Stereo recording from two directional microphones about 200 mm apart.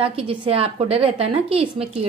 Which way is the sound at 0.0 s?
25° right (ahead or behind).